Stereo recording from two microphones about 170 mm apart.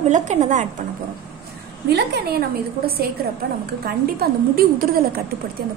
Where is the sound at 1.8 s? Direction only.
75° right (ahead or behind).